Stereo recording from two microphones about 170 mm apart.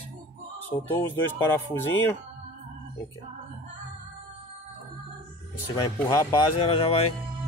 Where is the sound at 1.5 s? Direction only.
10° left (ahead or behind).